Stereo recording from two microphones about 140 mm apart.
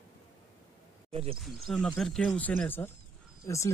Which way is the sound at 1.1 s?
45° right (ahead or behind).